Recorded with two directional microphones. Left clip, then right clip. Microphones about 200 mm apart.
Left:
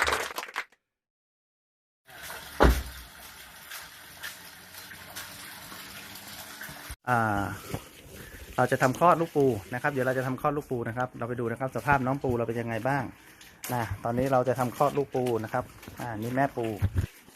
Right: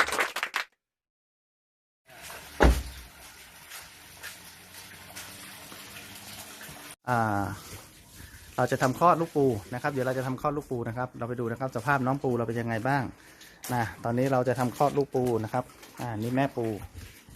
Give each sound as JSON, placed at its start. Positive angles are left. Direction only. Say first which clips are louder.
{"t": 0.1, "sound": "a sound", "louder": "right 2 dB", "side_deg": 0}
{"t": 7.0, "sound": "speech", "louder": "left 1 dB", "side_deg": 0}
{"t": 16.6, "sound": "speech", "louder": "even", "side_deg": -5}